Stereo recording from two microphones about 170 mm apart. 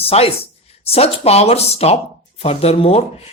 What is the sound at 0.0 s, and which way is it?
Speech, 35° left (ahead or behind).